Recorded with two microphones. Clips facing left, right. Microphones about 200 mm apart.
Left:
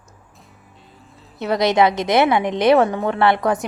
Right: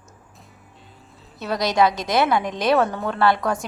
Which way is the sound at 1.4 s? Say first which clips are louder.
Left 4 dB; 20° left (ahead or behind).